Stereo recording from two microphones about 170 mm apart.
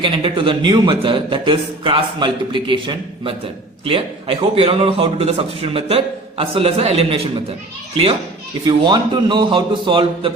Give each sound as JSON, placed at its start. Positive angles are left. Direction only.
{"t": 0.0, "sound": "a man's voice", "side_deg": -30}
{"t": 8.6, "sound": "a man's voice", "side_deg": -25}